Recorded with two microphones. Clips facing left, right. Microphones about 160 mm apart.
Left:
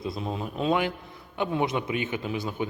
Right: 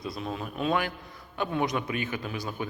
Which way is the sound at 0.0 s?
25° left (ahead or behind).